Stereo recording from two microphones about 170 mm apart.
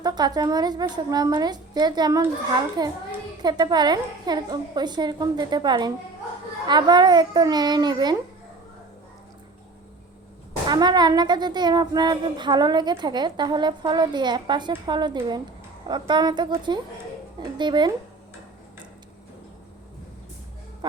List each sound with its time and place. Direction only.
0.0 s speech: 25° right (ahead or behind)
10.7 s speech: 25° right (ahead or behind)